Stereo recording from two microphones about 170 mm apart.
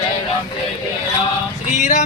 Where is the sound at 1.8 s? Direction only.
45° left (ahead or behind).